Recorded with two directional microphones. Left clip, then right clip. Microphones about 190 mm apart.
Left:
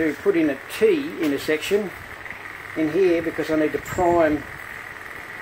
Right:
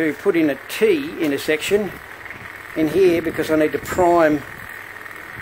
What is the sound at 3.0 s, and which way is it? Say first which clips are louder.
Speech: right 3 dB; 35° right (ahead or behind).